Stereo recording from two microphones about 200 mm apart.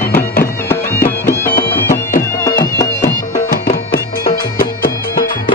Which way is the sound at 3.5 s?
45° left (ahead or behind).